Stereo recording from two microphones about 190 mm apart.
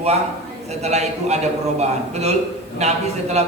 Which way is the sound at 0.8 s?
35° right (ahead or behind).